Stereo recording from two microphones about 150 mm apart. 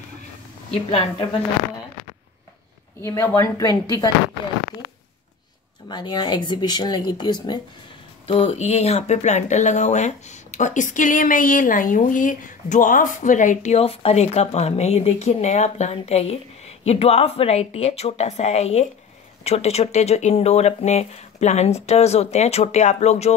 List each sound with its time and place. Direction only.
0.8 s a woman's voice: 40° left (ahead or behind)
3.0 s speech: 15° left (ahead or behind)
5.9 s speech: 30° left (ahead or behind)
8.3 s speech: 40° left (ahead or behind)